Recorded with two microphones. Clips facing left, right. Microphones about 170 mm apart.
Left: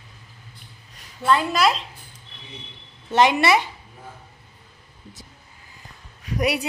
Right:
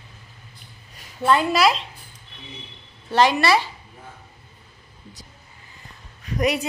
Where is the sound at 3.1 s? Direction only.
20° left (ahead or behind).